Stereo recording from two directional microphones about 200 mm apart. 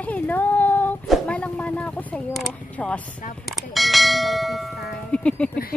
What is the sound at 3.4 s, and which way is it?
Bell, centre (ahead or behind).